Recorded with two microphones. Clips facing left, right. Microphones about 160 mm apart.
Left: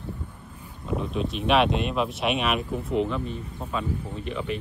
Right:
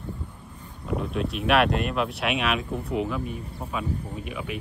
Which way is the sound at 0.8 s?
Centre (ahead or behind).